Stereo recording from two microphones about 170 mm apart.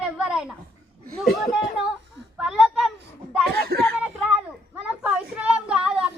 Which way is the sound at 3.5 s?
65° right (ahead or behind).